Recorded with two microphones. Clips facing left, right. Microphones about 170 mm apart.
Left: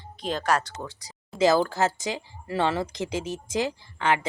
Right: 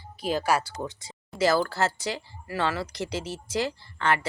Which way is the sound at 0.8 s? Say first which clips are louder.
Right 3 dB; 20° right (ahead or behind).